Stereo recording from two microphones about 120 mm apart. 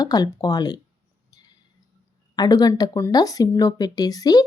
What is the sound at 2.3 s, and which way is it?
Speech, 35° left (ahead or behind).